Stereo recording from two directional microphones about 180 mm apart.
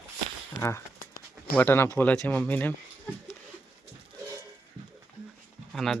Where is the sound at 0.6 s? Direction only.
15° left (ahead or behind).